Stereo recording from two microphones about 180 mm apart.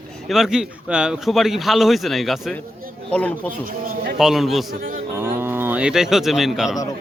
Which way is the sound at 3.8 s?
55° right (ahead or behind).